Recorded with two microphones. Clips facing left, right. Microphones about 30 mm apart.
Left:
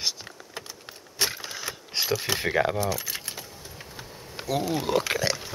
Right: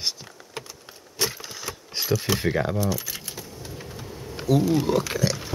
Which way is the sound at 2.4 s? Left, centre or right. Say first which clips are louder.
Even; left.